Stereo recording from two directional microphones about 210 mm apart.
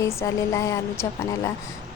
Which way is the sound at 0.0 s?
15° left (ahead or behind).